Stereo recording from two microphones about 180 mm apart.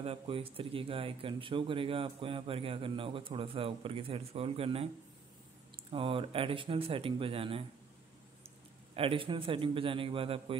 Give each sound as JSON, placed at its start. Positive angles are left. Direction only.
{"t": 0.0, "sound": "speech", "side_deg": -35}
{"t": 5.9, "sound": "speech", "side_deg": -30}
{"t": 8.9, "sound": "speech", "side_deg": -30}